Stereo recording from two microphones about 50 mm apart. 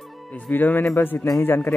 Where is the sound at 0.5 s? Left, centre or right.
Left.